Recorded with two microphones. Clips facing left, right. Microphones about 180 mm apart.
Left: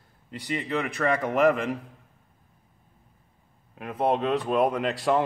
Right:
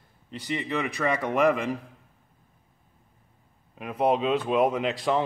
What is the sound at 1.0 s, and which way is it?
Speech, centre (ahead or behind).